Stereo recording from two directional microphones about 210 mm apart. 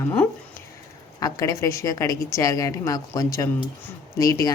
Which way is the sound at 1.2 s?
15° left (ahead or behind).